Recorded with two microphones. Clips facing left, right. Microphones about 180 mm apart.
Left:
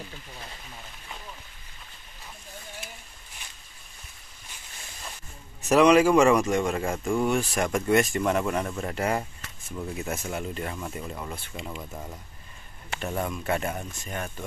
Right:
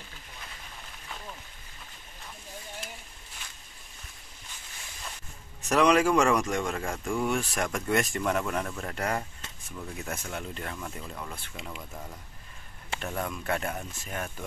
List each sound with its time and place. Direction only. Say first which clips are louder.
5.7 s speech: left 4 dB; 5° left (ahead or behind)
11.5 s speech: left 4 dB; centre (ahead or behind)
11.9 s speech: left 3 dB; 20° left (ahead or behind)
13.0 s speech: left 4 dB; 5° left (ahead or behind)